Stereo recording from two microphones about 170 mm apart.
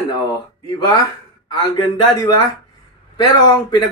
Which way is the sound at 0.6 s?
20° left (ahead or behind).